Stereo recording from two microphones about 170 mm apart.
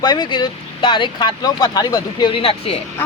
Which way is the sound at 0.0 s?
25° left (ahead or behind).